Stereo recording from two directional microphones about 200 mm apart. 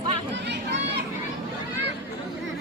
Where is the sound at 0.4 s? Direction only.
60° right (ahead or behind).